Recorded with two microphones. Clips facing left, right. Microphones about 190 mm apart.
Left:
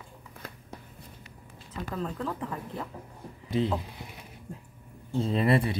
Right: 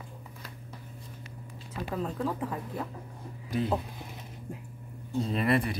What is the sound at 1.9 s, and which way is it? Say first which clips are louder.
Speech: right 2 dB; 10° right (ahead or behind).